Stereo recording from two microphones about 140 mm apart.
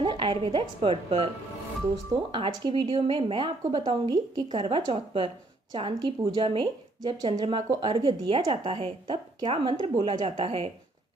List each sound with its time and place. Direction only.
0.0 s speech: 35° right (ahead or behind)
2.3 s a woman's voice: 35° right (ahead or behind)
4.6 s a woman's voice: 40° right (ahead or behind)